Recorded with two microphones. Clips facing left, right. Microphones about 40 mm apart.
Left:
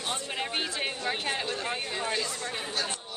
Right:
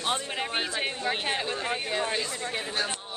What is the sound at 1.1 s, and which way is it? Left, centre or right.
Speech, right.